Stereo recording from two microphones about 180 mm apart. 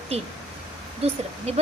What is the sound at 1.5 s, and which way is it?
Speech, 35° right (ahead or behind).